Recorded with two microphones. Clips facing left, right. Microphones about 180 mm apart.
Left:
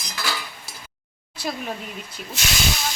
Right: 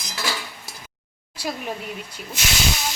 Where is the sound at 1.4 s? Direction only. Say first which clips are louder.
Even; 10° right (ahead or behind).